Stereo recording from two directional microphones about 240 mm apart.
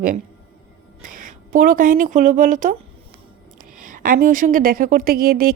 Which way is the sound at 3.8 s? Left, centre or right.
Right.